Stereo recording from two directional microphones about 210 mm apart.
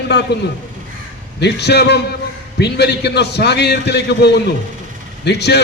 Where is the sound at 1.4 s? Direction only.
55° left (ahead or behind).